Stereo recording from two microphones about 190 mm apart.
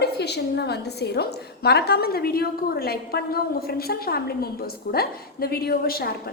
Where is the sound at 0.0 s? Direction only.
60° left (ahead or behind).